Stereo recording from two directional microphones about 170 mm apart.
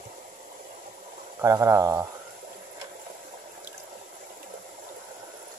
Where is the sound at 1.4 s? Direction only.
15° right (ahead or behind).